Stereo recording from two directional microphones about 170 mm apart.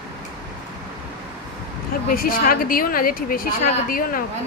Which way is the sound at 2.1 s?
60° left (ahead or behind).